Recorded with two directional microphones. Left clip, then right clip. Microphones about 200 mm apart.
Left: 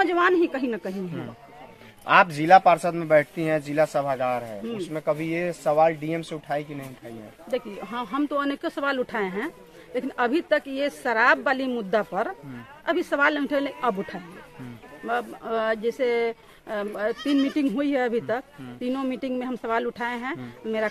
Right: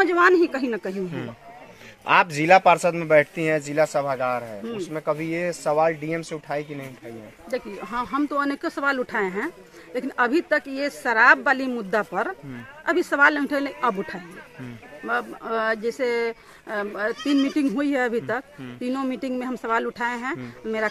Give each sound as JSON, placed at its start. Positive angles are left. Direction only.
{"t": 0.0, "sound": "speech", "side_deg": 0}
{"t": 2.0, "sound": "speech", "side_deg": -45}
{"t": 3.7, "sound": "speech", "side_deg": -5}
{"t": 7.4, "sound": "speech", "side_deg": 5}